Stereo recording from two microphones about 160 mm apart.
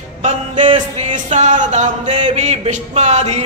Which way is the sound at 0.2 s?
45° right (ahead or behind).